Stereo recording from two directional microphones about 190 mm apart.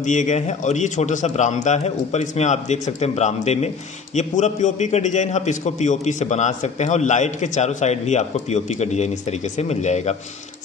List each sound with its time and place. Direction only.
0.0 s a man's voice: 40° left (ahead or behind)